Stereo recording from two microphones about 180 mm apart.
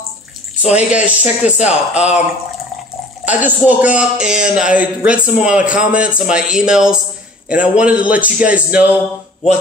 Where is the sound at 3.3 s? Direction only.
10° right (ahead or behind).